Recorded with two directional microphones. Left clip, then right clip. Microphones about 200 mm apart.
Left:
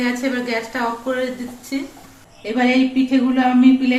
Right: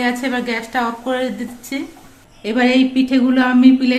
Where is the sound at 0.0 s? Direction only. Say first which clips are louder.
Right 2 dB; 55° right (ahead or behind).